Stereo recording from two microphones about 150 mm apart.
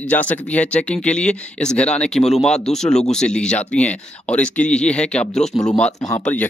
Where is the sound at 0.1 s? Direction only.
10° left (ahead or behind).